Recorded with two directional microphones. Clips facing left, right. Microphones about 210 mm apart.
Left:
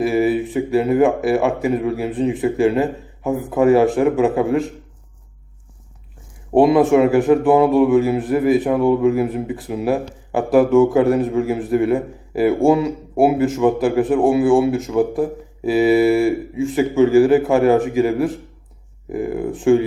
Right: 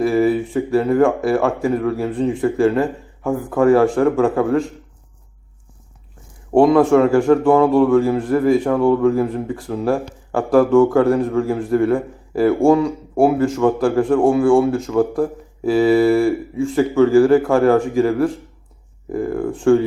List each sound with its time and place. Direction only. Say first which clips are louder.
0.0 s a man's voice: right 1 dB; 20° left (ahead or behind)
6.5 s a man's voice: right 1 dB; 20° left (ahead or behind)